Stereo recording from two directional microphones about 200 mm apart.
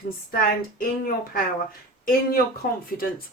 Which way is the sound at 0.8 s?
45° left (ahead or behind).